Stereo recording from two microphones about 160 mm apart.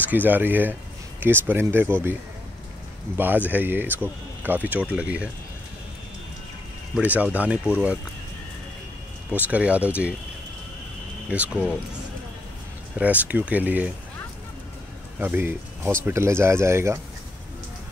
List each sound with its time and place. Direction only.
0.1 s speech: 10° right (ahead or behind)
3.2 s speech: 10° right (ahead or behind)
7.0 s speech: 10° right (ahead or behind)
9.3 s speech: 10° right (ahead or behind)
11.2 s speech: 10° right (ahead or behind)
12.9 s speech: 10° right (ahead or behind)
15.1 s speech: 10° right (ahead or behind)